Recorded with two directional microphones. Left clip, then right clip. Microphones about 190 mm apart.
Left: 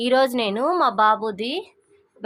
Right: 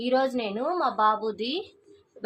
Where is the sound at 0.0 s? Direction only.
55° left (ahead or behind).